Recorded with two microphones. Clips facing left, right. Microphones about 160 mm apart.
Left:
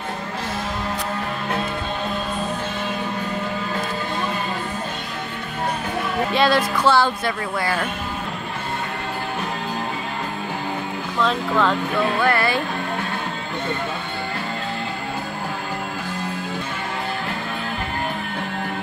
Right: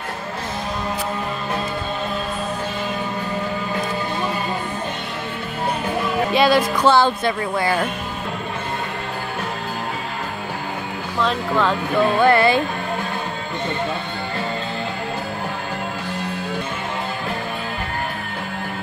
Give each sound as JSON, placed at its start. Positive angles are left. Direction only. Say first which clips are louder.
{"t": 6.3, "sound": "speech", "louder": "right 2 dB", "side_deg": -10}
{"t": 11.1, "sound": "speech", "louder": "even", "side_deg": 0}
{"t": 12.2, "sound": "speech", "louder": "right 7 dB", "side_deg": -20}